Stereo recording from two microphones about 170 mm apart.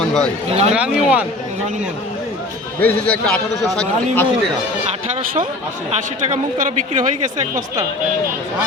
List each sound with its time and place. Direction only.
0.0 s a sound: 5° left (ahead or behind)
0.4 s a man's voice: 40° right (ahead or behind)
0.7 s speech: 5° right (ahead or behind)
2.8 s a man's voice: 5° left (ahead or behind)
5.9 s a man's voice: 50° right (ahead or behind)